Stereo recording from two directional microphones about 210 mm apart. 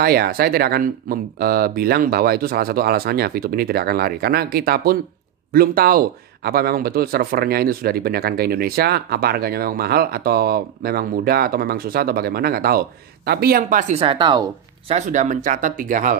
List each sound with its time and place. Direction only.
0.0 s speech: 45° right (ahead or behind); by 15.0 s 20° right (ahead or behind)
15.0 s speech: 35° right (ahead or behind)